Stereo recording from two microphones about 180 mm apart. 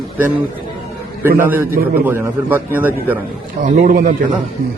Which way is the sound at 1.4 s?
10° right (ahead or behind).